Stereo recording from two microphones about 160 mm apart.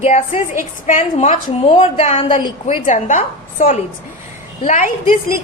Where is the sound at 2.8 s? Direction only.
50° left (ahead or behind).